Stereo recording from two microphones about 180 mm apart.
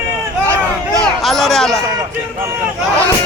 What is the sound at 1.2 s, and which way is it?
Speech, centre (ahead or behind).